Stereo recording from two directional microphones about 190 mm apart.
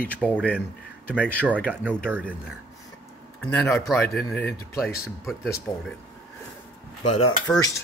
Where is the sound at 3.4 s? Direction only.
5° left (ahead or behind).